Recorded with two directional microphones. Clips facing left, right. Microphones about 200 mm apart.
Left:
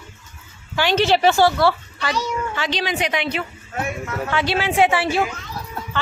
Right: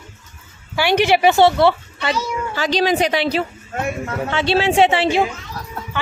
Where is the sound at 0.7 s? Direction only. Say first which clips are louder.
Right 2 dB; 15° right (ahead or behind).